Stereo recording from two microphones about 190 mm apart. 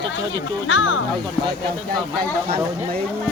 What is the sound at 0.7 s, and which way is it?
Speech, 90° left.